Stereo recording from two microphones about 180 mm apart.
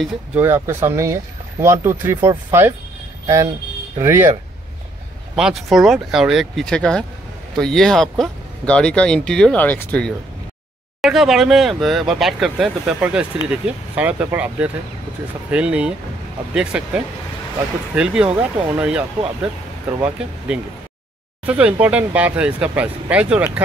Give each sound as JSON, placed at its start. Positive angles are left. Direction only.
{"t": 0.4, "sound": "speech", "side_deg": -15}
{"t": 5.3, "sound": "speech", "side_deg": 0}